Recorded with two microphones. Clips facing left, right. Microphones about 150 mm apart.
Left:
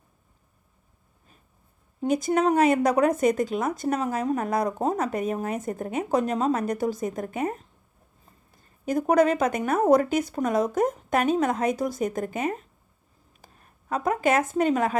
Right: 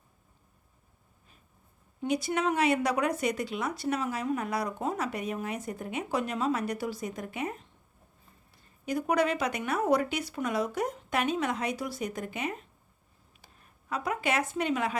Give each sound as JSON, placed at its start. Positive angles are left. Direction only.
{"t": 2.0, "sound": "speech", "side_deg": 45}
{"t": 13.4, "sound": "a sound", "side_deg": 45}
{"t": 13.9, "sound": "speech", "side_deg": 45}